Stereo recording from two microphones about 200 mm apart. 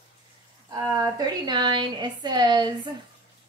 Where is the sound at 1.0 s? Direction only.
20° right (ahead or behind).